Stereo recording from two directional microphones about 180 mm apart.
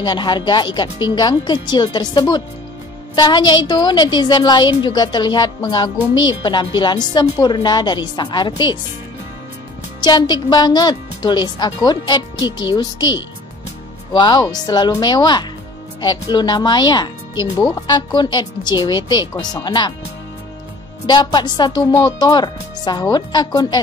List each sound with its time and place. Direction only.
0.0 s a woman's voice: 25° left (ahead or behind)
9.9 s a woman's voice: 25° left (ahead or behind)
21.1 s a woman's voice: 25° left (ahead or behind)